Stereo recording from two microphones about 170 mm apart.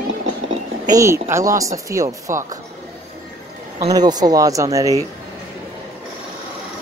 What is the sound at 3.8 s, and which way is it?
Speech, 20° right (ahead or behind).